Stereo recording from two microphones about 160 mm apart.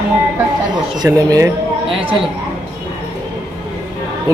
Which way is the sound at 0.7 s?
25° right (ahead or behind).